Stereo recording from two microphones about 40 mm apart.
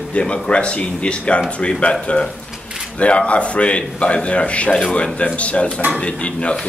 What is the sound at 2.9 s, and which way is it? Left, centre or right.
Speech, left.